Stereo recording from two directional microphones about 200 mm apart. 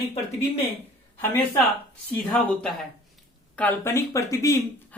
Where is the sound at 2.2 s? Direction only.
5° left (ahead or behind).